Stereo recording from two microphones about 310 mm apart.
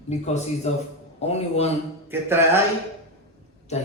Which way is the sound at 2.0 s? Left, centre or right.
Centre.